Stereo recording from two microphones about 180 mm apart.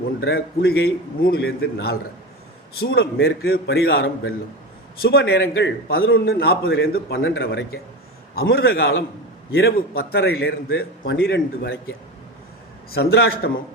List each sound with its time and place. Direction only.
0.2 s a man's voice: 65° left (ahead or behind); by 11.8 s 80° left
12.9 s a man's voice: 65° left (ahead or behind)